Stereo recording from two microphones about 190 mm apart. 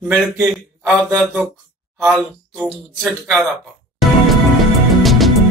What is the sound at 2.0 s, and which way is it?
Speech, 5° right (ahead or behind).